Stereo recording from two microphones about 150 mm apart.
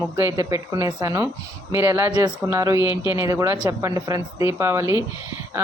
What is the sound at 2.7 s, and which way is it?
Speech, 30° left (ahead or behind).